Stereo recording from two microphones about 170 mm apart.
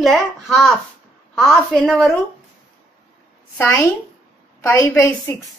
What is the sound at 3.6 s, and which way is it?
A woman's voice, 15° left (ahead or behind).